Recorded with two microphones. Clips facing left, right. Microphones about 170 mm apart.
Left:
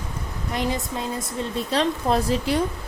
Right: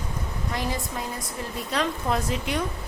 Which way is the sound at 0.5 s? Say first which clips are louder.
Left 5 dB; 20° left (ahead or behind).